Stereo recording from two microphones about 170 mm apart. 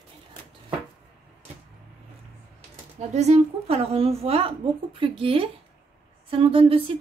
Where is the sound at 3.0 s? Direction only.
40° right (ahead or behind).